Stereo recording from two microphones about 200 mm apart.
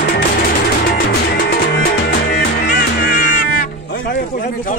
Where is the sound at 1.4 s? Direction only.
50° left (ahead or behind).